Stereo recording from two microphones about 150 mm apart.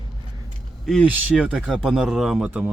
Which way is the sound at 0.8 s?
Centre (ahead or behind).